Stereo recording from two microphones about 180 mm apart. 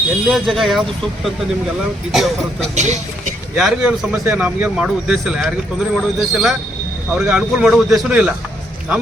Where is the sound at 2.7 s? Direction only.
40° right (ahead or behind).